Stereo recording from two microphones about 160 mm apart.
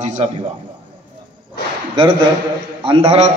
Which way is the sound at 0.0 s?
45° right (ahead or behind).